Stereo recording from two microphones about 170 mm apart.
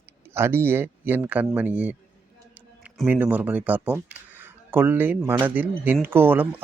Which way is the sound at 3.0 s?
10° right (ahead or behind).